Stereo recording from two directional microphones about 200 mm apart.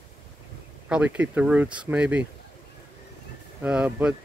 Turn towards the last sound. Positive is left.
turn(degrees=-5)  # may be behind; listen again after turning